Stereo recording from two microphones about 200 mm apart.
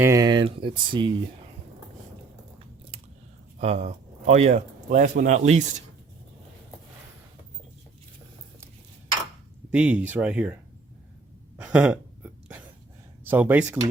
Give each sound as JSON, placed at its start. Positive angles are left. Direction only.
{"t": 0.0, "sound": "speech", "side_deg": -15}
{"t": 3.6, "sound": "speech", "side_deg": -35}
{"t": 9.7, "sound": "speech", "side_deg": -5}
{"t": 11.5, "sound": "a sound", "side_deg": -5}
{"t": 13.2, "sound": "speech", "side_deg": -10}